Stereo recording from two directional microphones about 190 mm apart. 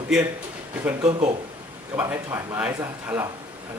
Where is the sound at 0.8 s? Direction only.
10° right (ahead or behind).